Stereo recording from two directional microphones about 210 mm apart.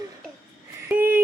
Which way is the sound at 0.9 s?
5° right (ahead or behind).